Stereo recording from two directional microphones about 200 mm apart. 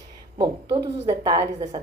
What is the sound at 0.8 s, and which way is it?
Speech, 25° right (ahead or behind).